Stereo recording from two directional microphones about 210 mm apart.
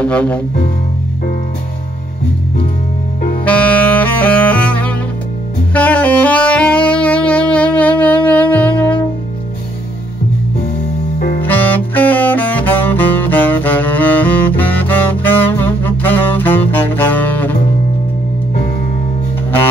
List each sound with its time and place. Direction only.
0.0 s music: 5° left (ahead or behind)
3.4 s saxophone: 5° left (ahead or behind)
11.1 s music: 45° left (ahead or behind)
11.4 s saxophone: 10° left (ahead or behind)